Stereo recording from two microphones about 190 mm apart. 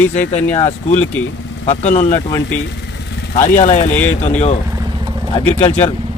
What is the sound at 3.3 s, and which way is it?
Speech, 40° left (ahead or behind).